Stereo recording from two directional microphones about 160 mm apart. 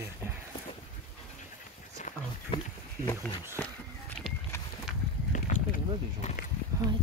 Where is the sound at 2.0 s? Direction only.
45° left (ahead or behind).